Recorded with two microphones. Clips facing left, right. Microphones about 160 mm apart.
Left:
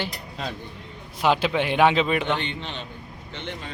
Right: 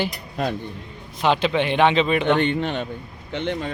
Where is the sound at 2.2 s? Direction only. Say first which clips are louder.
Right 8 dB; 50° right (ahead or behind).